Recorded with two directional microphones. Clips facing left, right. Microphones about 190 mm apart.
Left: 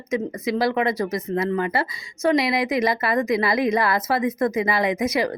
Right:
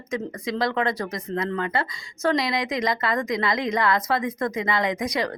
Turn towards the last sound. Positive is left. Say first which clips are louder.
# left 3 dB
turn(degrees=25)  # may be behind; listen again after turning